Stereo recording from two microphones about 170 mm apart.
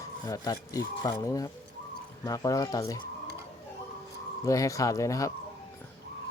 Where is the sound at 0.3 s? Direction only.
20° left (ahead or behind).